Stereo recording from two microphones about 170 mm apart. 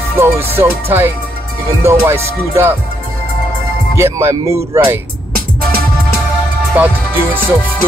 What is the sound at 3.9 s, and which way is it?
Speech, 15° right (ahead or behind).